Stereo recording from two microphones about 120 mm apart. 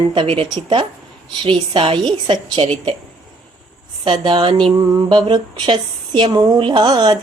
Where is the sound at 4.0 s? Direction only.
40° right (ahead or behind).